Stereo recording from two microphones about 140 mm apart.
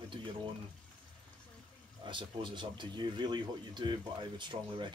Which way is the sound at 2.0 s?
35° right (ahead or behind).